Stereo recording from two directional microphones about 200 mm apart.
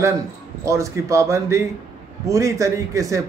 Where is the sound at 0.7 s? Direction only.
15° right (ahead or behind).